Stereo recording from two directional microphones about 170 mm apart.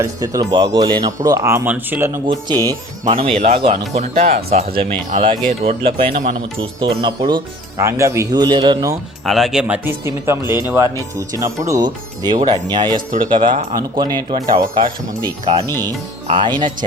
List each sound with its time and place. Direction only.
0.0 s speech: 20° right (ahead or behind)
3.1 s speech: 35° right (ahead or behind)
6.1 s speech: 60° right (ahead or behind)
6.7 s speech: 30° right (ahead or behind)
9.2 s speech: centre (ahead or behind); by 16.7 s 25° right (ahead or behind)